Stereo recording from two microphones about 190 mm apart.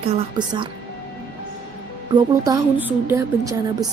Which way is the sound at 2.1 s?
20° right (ahead or behind).